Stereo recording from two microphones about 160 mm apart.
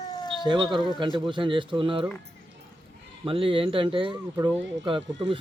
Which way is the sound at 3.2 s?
35° right (ahead or behind).